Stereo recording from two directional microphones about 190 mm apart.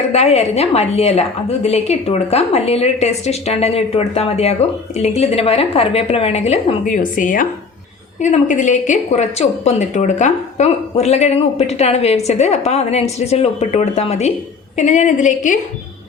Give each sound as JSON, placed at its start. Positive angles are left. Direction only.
{"t": 0.1, "sound": "a woman's voice", "side_deg": 35}